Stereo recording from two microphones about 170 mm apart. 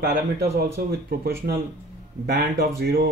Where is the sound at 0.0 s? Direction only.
65° right (ahead or behind).